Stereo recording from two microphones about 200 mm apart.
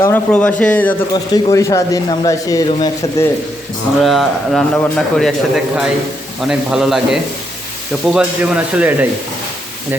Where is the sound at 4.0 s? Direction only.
Centre (ahead or behind).